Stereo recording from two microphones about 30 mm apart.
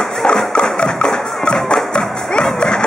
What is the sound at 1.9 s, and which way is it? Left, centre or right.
Music, left.